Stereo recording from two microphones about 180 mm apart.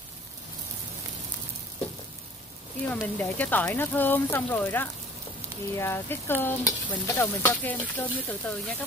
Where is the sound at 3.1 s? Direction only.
10° left (ahead or behind).